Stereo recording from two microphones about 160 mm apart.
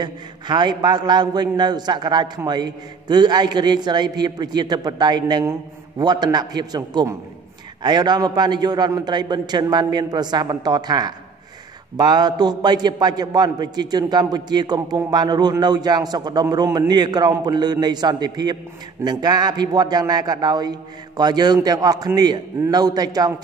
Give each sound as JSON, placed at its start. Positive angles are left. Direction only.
{"t": 0.0, "sound": "a man's voice", "side_deg": -30}